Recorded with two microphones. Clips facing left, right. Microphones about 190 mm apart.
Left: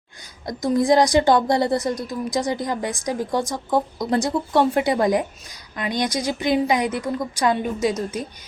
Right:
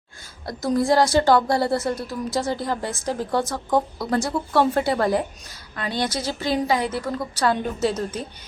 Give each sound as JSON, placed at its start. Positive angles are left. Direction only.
{"t": 0.4, "sound": "a woman's voice", "side_deg": 15}